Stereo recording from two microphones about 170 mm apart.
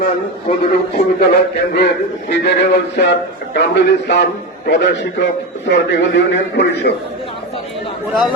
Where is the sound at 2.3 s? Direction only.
80° left.